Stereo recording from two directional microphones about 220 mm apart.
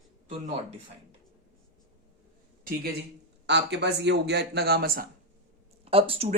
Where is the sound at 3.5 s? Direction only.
50° right (ahead or behind).